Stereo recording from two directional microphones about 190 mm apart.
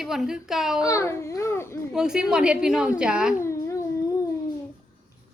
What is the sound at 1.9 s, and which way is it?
A woman's voice, 5° right (ahead or behind).